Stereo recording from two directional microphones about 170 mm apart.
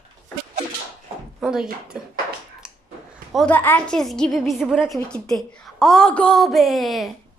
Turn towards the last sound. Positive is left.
turn(degrees=0)  # may be behind; listen again after turning